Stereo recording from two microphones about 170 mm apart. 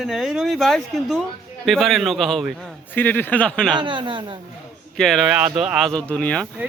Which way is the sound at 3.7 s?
25° right (ahead or behind).